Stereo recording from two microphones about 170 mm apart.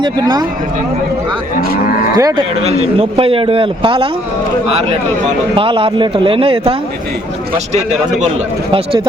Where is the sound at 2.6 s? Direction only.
35° right (ahead or behind).